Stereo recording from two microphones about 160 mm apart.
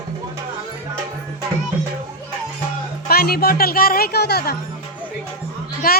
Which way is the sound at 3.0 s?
70° left (ahead or behind).